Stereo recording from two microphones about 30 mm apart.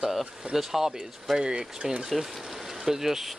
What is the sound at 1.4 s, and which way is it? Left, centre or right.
Speech, right.